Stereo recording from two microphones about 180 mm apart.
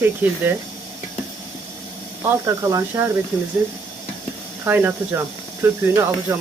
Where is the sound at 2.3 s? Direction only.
15° right (ahead or behind).